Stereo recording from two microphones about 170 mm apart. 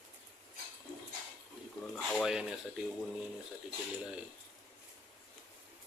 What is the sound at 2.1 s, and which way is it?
Speech, centre (ahead or behind).